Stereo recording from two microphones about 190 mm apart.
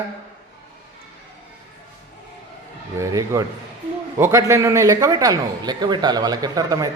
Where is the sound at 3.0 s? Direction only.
15° right (ahead or behind).